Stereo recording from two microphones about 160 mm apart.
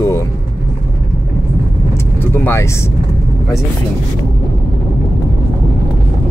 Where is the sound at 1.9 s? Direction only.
15° left (ahead or behind).